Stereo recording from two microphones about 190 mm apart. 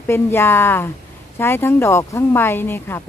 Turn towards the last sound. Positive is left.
turn(degrees=10)  # may be behind; listen again after turning